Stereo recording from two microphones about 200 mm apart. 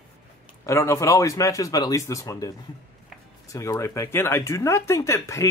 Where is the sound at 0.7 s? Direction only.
15° left (ahead or behind).